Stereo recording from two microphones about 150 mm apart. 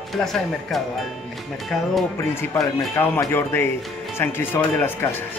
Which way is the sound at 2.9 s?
20° left (ahead or behind).